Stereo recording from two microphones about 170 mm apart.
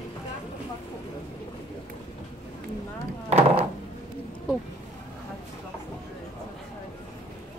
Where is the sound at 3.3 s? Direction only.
35° right (ahead or behind).